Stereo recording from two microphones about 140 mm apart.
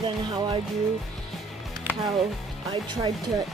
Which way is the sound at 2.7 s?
35° right (ahead or behind).